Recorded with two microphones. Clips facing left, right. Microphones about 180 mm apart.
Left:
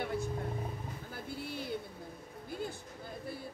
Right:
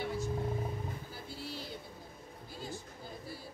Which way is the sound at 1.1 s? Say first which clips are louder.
Left 3 dB; 55° left (ahead or behind).